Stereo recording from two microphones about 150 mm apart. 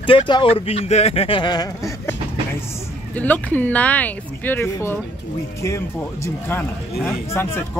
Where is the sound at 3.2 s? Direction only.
10° left (ahead or behind).